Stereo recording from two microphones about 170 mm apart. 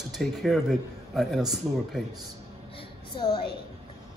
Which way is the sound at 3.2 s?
25° left (ahead or behind).